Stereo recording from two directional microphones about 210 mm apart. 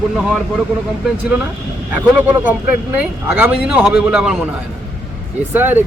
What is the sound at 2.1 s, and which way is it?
Speech, 5° right (ahead or behind).